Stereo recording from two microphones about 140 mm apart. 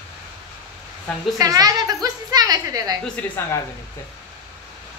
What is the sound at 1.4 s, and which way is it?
A woman's voice, 25° right (ahead or behind).